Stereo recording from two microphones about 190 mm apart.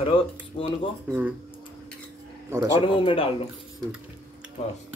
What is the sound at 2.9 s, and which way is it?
Speech, 25° left (ahead or behind).